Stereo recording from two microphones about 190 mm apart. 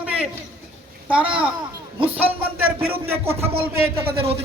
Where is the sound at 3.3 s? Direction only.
30° right (ahead or behind).